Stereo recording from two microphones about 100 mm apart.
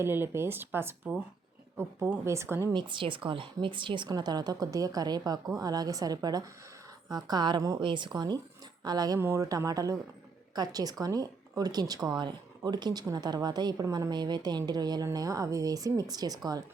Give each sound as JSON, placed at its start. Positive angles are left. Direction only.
{"t": 0.0, "sound": "speech", "side_deg": -25}
{"t": 2.2, "sound": "speech", "side_deg": -25}
{"t": 2.7, "sound": "a woman's voice", "side_deg": -55}
{"t": 7.8, "sound": "a woman's voice", "side_deg": -55}
{"t": 9.1, "sound": "a woman's voice", "side_deg": -25}